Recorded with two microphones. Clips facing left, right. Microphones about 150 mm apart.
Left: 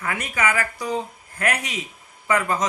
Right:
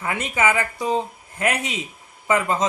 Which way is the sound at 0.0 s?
25° right (ahead or behind).